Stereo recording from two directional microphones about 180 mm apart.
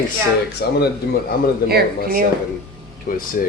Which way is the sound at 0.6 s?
60° left (ahead or behind).